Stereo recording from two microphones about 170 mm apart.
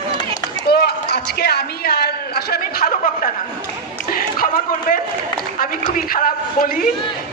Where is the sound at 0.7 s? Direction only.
70° left (ahead or behind).